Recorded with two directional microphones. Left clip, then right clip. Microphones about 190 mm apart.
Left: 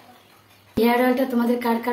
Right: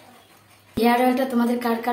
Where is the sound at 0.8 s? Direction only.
Centre (ahead or behind).